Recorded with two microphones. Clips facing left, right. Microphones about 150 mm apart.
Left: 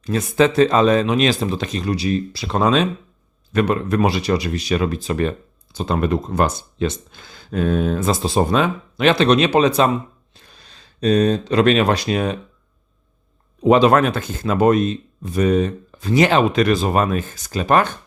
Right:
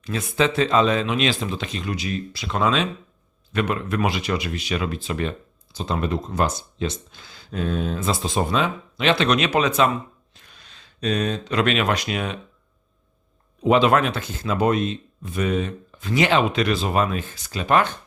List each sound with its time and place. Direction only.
0.0 s speech: 45° left (ahead or behind)
5.7 s speech: 55° left (ahead or behind)
9.2 s speech: 30° left (ahead or behind)
13.7 s speech: 40° left (ahead or behind)